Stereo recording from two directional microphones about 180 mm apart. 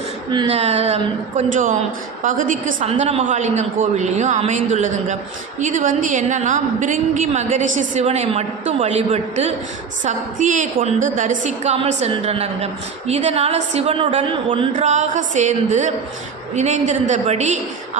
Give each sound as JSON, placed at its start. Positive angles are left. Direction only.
{"t": 0.3, "sound": "a woman's voice", "side_deg": -30}